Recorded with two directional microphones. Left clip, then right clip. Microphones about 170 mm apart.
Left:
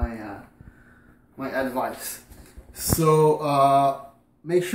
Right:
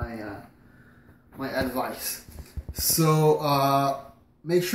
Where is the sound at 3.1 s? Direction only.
20° left (ahead or behind).